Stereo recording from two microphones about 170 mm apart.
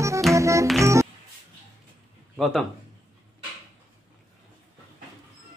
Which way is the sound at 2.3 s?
Centre (ahead or behind).